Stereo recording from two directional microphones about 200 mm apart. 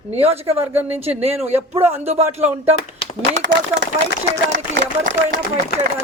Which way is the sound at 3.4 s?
60° right (ahead or behind).